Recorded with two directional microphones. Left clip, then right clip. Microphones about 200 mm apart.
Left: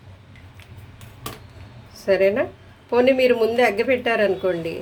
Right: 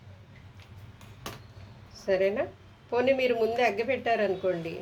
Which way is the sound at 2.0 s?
15° left (ahead or behind).